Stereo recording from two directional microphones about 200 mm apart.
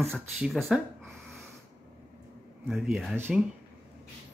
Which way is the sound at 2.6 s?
Centre (ahead or behind).